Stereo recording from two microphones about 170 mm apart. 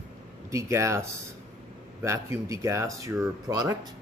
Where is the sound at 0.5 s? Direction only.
15° right (ahead or behind).